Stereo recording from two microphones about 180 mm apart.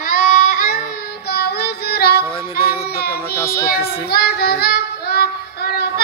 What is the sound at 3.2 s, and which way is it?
Child singing, 15° left (ahead or behind).